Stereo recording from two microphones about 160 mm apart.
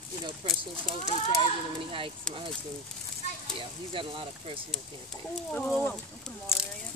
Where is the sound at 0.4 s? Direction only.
30° right (ahead or behind).